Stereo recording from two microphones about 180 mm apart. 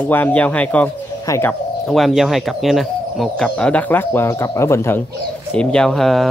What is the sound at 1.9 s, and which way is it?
Speech, centre (ahead or behind).